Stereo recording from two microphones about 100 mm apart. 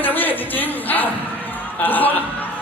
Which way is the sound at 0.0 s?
20° left (ahead or behind).